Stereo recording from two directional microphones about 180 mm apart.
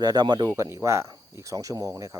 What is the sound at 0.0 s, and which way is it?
Speech, 20° right (ahead or behind).